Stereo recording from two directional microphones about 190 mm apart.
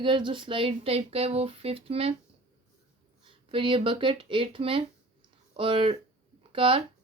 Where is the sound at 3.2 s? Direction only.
25° right (ahead or behind).